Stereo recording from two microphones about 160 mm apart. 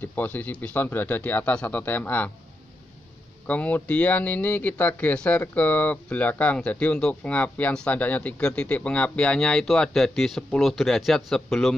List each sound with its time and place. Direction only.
0.0 s speech: 10° left (ahead or behind)
3.4 s speech: 10° left (ahead or behind)